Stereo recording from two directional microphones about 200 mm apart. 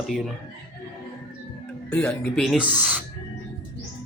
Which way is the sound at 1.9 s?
5° left (ahead or behind).